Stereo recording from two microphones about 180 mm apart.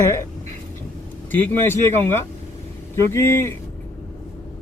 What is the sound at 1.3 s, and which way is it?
Speech, 10° left (ahead or behind).